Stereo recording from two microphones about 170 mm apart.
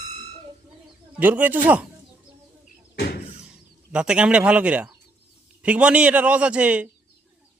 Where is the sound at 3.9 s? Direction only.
5° right (ahead or behind).